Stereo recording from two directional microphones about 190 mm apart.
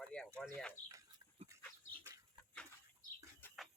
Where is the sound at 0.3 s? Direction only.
5° left (ahead or behind).